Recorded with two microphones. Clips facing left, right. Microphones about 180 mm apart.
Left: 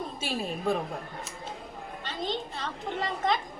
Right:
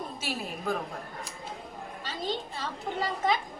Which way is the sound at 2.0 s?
5° right (ahead or behind).